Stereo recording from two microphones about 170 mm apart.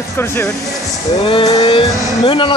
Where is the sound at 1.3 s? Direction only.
30° left (ahead or behind).